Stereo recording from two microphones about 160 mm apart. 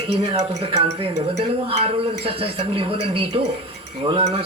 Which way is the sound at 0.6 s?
35° right (ahead or behind).